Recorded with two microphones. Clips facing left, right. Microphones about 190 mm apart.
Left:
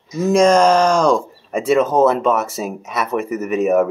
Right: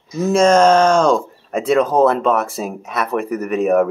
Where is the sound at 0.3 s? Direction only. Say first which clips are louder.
Even; 10° left (ahead or behind).